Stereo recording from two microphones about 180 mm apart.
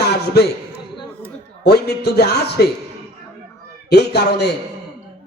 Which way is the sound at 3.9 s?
65° left (ahead or behind).